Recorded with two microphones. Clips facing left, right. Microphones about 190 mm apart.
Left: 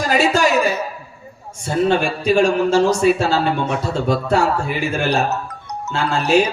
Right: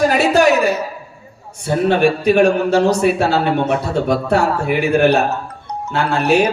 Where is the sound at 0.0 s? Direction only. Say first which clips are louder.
Right 4 dB; 60° right (ahead or behind).